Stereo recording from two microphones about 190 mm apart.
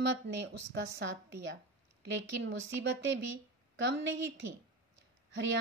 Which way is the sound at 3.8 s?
70° right (ahead or behind).